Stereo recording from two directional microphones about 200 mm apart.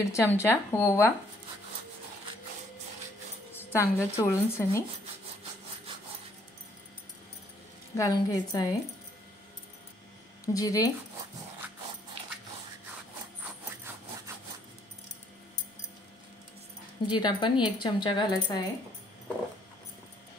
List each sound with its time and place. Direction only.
0.0 s a woman's voice: 15° left (ahead or behind)
3.7 s a woman's voice: 10° left (ahead or behind)
7.9 s a woman's voice: 15° left (ahead or behind)
10.4 s a woman's voice: 15° left (ahead or behind)
17.1 s a woman's voice: 20° left (ahead or behind)